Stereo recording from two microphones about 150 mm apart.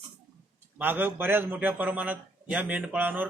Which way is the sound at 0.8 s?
10° right (ahead or behind).